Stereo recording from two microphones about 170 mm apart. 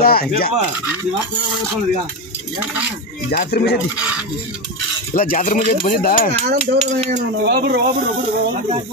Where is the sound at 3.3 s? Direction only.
65° left (ahead or behind).